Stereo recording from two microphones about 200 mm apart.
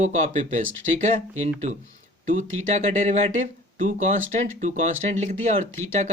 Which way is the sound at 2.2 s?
40° right (ahead or behind).